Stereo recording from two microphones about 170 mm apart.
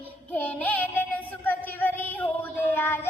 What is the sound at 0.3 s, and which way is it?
Child singing, 10° left (ahead or behind).